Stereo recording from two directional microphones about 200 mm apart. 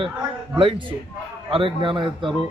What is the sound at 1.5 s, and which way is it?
Speech, 25° right (ahead or behind).